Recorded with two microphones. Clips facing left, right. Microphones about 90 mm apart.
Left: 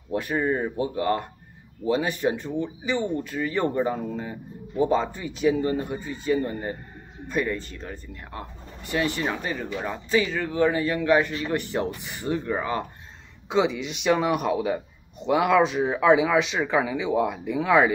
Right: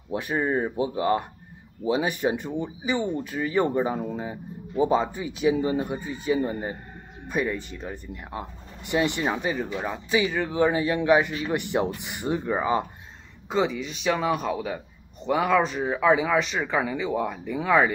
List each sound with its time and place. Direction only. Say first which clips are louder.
0.1 s speech: left 1 dB; 15° right (ahead or behind)
13.5 s speech: left 2 dB; centre (ahead or behind)